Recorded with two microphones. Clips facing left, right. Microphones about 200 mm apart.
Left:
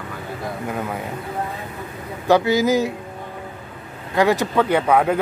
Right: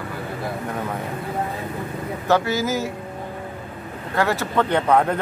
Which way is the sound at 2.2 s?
15° left (ahead or behind).